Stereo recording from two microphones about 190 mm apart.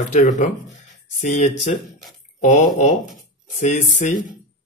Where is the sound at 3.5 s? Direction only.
40° left (ahead or behind).